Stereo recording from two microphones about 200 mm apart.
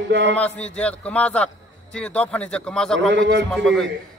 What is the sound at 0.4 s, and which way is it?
A man's voice, 5° left (ahead or behind).